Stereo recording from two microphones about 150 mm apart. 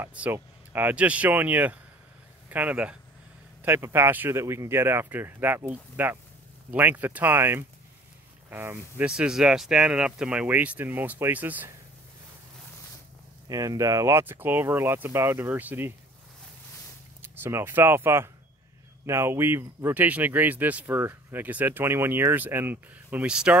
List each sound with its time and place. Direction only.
0.0 s speech: 10° right (ahead or behind)
13.5 s speech: 20° right (ahead or behind)
17.2 s speech: 15° right (ahead or behind)